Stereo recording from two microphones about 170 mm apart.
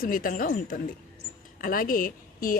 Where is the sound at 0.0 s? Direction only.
50° left (ahead or behind).